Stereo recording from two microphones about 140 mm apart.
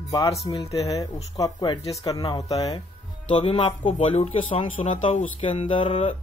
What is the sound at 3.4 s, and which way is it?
Speech, 35° left (ahead or behind).